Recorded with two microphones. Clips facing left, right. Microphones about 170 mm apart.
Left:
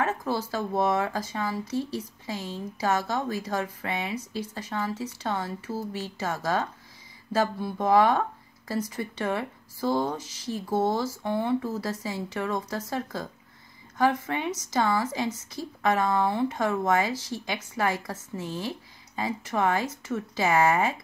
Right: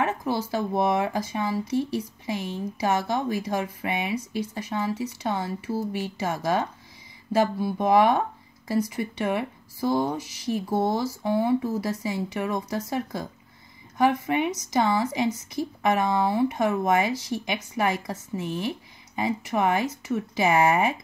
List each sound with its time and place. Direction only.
0.0 s a woman's voice: 15° right (ahead or behind)